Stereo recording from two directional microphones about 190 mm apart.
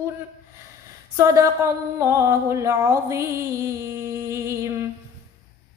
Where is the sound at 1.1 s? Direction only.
15° right (ahead or behind).